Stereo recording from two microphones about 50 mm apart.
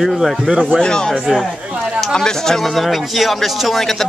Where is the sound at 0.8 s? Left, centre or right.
Centre.